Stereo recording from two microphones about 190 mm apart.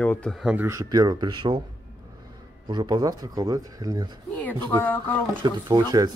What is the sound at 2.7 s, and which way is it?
Speech, 25° right (ahead or behind).